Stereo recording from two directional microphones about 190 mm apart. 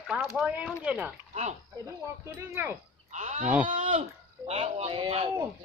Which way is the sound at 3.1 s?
40° right (ahead or behind).